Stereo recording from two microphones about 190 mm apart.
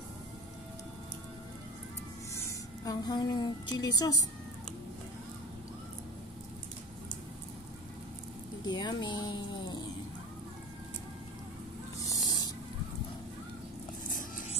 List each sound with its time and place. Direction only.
2.3 s a woman's voice: 15° left (ahead or behind)
8.6 s speech: 25° left (ahead or behind)
12.1 s a sound: 20° left (ahead or behind)
14.0 s vehicle: 45° left (ahead or behind)